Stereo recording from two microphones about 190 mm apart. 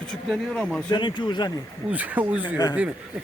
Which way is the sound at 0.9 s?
25° left (ahead or behind).